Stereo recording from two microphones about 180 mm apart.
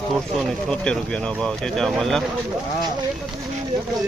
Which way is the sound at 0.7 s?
5° left (ahead or behind).